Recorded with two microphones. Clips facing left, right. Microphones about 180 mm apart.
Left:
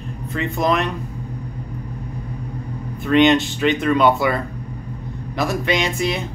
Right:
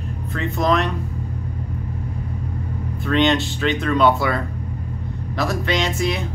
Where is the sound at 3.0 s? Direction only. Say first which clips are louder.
Left 4 dB; 15° left (ahead or behind).